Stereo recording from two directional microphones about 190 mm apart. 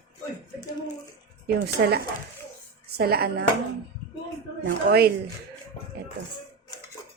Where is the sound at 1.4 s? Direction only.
55° right (ahead or behind).